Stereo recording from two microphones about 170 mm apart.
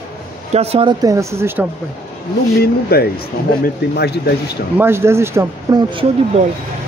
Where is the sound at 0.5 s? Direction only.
35° right (ahead or behind).